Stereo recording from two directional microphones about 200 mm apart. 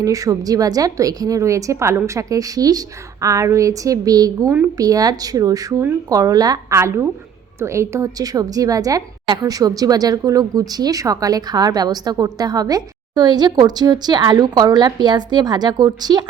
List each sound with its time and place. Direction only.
0.0 s a woman's voice: 15° right (ahead or behind)